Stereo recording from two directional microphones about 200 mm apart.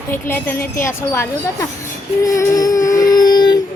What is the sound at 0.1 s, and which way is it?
A woman's voice, 10° left (ahead or behind).